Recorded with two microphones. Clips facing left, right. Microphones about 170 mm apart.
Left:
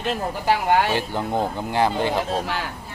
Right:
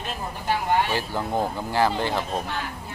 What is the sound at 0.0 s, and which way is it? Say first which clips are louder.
Speech: left 7 dB; 75° left (ahead or behind).